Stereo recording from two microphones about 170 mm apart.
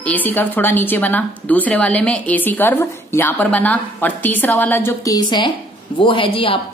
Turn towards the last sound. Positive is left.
turn(degrees=30)  # may be behind; listen again after turning